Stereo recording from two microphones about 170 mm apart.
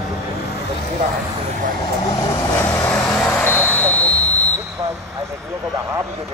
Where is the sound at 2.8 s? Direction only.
5° left (ahead or behind).